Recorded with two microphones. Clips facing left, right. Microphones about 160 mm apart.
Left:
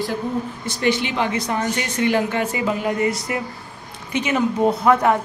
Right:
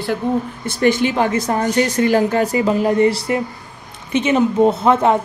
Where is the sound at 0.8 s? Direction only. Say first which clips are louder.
Right 5 dB; 45° right (ahead or behind).